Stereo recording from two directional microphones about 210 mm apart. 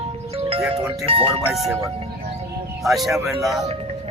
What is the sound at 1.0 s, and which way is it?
Speech, 25° right (ahead or behind).